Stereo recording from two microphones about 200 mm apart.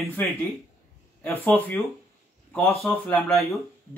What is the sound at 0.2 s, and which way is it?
Speech, 10° left (ahead or behind).